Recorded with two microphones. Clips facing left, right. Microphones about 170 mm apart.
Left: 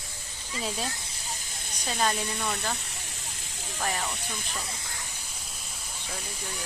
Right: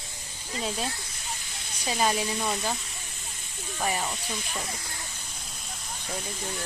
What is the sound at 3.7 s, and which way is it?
Speech, 10° right (ahead or behind).